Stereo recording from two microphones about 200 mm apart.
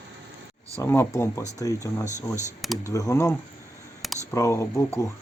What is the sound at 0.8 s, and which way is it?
Speech, 15° left (ahead or behind).